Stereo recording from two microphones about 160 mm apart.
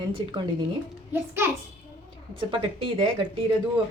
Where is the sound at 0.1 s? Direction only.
30° right (ahead or behind).